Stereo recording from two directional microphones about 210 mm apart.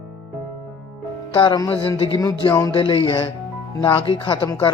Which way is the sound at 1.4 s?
20° left (ahead or behind).